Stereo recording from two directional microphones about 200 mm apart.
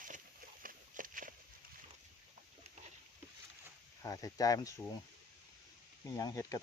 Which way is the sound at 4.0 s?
15° left (ahead or behind).